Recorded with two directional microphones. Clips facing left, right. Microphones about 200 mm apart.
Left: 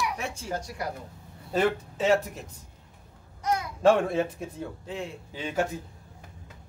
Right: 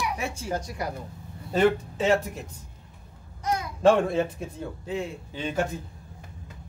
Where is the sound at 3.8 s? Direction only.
5° left (ahead or behind).